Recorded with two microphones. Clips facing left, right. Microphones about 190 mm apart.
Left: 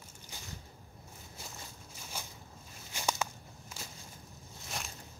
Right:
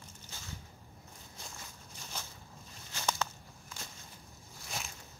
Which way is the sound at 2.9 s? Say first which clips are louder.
Left 1 dB; 10° left (ahead or behind).